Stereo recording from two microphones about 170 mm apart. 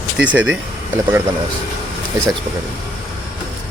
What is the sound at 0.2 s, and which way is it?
Speech, 5° right (ahead or behind).